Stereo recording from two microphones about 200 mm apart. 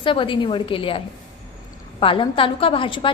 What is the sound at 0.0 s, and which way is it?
A woman's voice, 25° left (ahead or behind).